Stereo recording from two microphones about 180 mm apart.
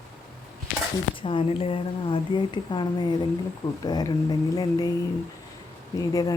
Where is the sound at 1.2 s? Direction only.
30° left (ahead or behind).